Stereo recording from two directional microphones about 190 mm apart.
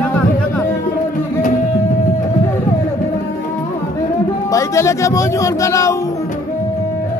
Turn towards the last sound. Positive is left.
turn(degrees=15)  # may be behind; listen again after turning